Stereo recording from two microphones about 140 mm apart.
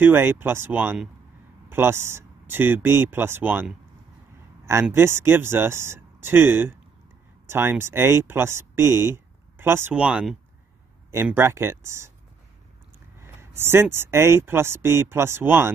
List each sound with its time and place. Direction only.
0.0 s speech: 15° right (ahead or behind)
4.9 s speech: 20° right (ahead or behind)
13.2 s speech: 15° right (ahead or behind)